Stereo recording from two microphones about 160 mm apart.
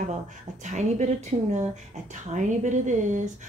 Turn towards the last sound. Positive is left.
turn(degrees=-50)  # may be behind; listen again after turning